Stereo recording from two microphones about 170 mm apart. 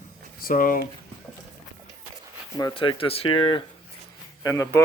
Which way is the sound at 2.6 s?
25° left (ahead or behind).